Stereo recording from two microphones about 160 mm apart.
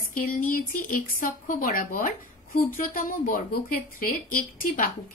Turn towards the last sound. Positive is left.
turn(degrees=60)  # may be behind; listen again after turning